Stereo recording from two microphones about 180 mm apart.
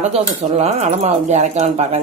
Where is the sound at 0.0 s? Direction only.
40° right (ahead or behind).